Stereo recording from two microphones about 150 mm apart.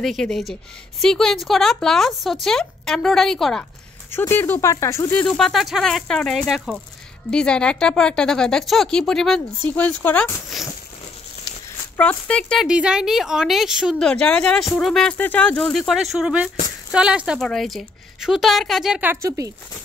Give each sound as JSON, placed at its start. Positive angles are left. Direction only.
{"t": 0.0, "sound": "speech", "side_deg": 0}
{"t": 4.1, "sound": "speech", "side_deg": 15}
{"t": 5.1, "sound": "speech", "side_deg": 10}
{"t": 12.0, "sound": "speech", "side_deg": 10}
{"t": 12.6, "sound": "speech", "side_deg": -5}